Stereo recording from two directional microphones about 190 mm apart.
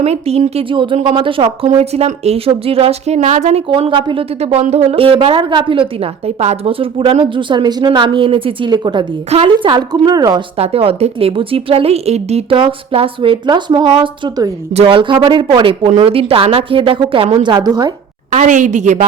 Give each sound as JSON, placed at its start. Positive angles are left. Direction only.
{"t": 0.0, "sound": "a woman's voice", "side_deg": -35}
{"t": 3.7, "sound": "a woman's voice", "side_deg": -25}
{"t": 10.6, "sound": "a woman's voice", "side_deg": -30}
{"t": 18.3, "sound": "a woman's voice", "side_deg": -40}